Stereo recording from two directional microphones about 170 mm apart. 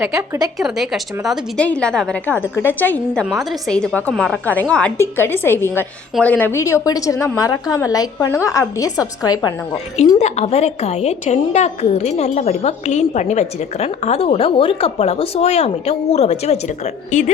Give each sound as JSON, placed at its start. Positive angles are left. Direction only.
{"t": 0.0, "sound": "a woman's voice", "side_deg": -20}
{"t": 0.6, "sound": "a woman's voice", "side_deg": 0}
{"t": 10.2, "sound": "a woman's voice", "side_deg": 40}